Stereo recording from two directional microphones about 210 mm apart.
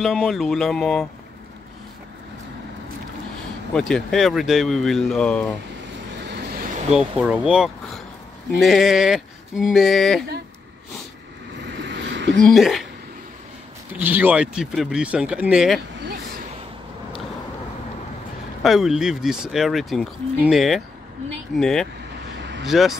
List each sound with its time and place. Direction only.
0.0 s speech: centre (ahead or behind)
3.7 s speech: centre (ahead or behind)
6.9 s speech: centre (ahead or behind)
11.8 s a sound: 55° right (ahead or behind)
12.4 s speech: centre (ahead or behind)
13.9 s speech: 10° right (ahead or behind)
18.6 s speech: centre (ahead or behind)
22.4 s vehicle: 55° right (ahead or behind)
22.7 s speech: centre (ahead or behind)